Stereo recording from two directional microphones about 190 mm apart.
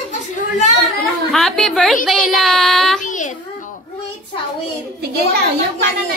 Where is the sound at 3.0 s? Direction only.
40° left (ahead or behind).